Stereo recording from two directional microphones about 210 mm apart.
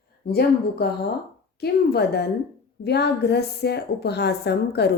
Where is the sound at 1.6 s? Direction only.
50° left (ahead or behind).